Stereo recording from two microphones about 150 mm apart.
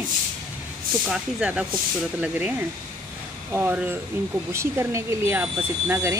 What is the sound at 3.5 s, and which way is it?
Speech, 10° right (ahead or behind).